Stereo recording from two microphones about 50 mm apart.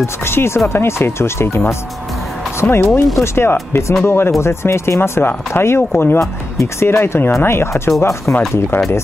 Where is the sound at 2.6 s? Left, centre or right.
Left.